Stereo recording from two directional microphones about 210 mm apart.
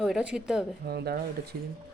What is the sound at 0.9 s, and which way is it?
Speech, 50° right (ahead or behind).